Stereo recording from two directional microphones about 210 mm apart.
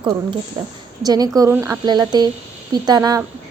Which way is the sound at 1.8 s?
20° right (ahead or behind).